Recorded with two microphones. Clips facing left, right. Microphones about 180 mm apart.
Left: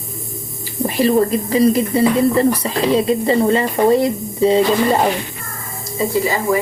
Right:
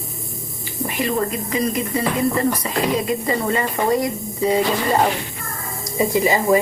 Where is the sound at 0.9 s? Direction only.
35° left (ahead or behind).